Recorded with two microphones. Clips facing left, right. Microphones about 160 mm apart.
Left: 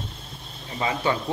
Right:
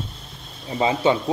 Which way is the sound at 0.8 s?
25° right (ahead or behind).